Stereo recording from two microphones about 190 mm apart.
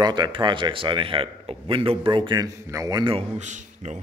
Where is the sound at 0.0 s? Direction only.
20° right (ahead or behind).